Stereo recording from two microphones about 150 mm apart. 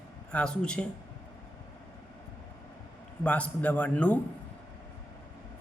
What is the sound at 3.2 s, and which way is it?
Speech, 10° left (ahead or behind).